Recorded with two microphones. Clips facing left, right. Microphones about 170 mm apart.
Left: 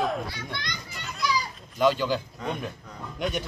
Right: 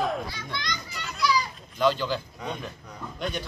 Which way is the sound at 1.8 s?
10° left (ahead or behind).